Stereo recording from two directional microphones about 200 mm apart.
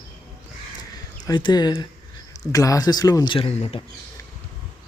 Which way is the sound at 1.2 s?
20° left (ahead or behind).